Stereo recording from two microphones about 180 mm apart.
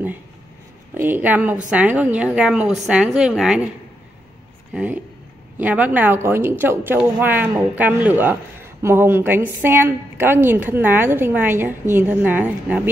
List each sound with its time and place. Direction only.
0.9 s a woman's voice: 10° right (ahead or behind)
4.7 s a woman's voice: 10° right (ahead or behind)